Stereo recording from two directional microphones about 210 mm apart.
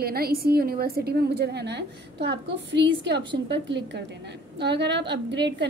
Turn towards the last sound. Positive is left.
turn(degrees=-55)  # may be behind; listen again after turning